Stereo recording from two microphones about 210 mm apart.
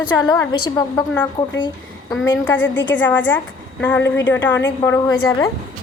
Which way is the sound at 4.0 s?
60° left (ahead or behind).